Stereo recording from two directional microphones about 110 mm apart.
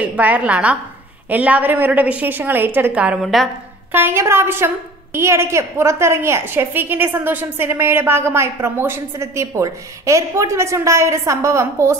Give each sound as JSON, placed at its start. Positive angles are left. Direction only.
{"t": 0.0, "sound": "a woman's voice", "side_deg": -15}
{"t": 3.2, "sound": "a woman's voice", "side_deg": 0}
{"t": 3.9, "sound": "a woman's voice", "side_deg": -20}